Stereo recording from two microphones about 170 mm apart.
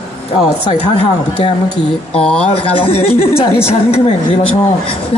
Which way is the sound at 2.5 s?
35° left (ahead or behind).